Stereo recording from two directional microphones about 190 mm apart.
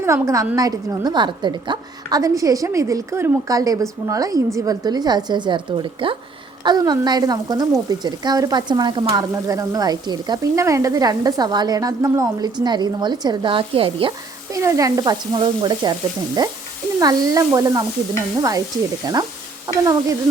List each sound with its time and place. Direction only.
0.0 s speech: 15° right (ahead or behind)
14.5 s speech: 15° right (ahead or behind)